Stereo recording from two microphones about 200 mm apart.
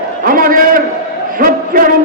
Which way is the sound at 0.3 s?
45° right (ahead or behind).